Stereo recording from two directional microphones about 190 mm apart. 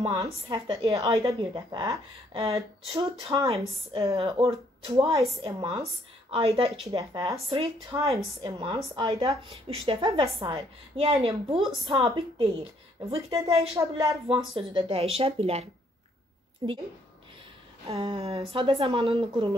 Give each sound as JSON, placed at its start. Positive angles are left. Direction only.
{"t": 0.0, "sound": "a woman's voice", "side_deg": -25}
{"t": 7.0, "sound": "a woman's voice", "side_deg": -20}
{"t": 13.7, "sound": "a woman's voice", "side_deg": -20}
{"t": 17.8, "sound": "a woman's voice", "side_deg": -30}